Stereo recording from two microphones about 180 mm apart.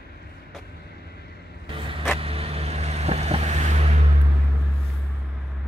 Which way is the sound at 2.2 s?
35° right (ahead or behind).